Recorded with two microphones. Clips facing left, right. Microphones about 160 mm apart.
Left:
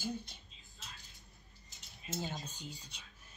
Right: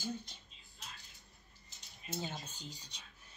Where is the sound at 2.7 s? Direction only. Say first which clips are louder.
Left 2 dB; 35° right (ahead or behind).